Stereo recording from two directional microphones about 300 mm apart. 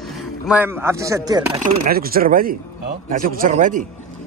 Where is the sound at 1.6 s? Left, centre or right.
Right.